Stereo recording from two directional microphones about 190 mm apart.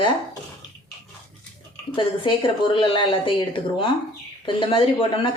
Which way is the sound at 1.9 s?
25° left (ahead or behind).